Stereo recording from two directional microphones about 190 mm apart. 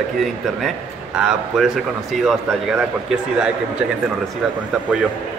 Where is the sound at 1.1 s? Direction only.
5° right (ahead or behind).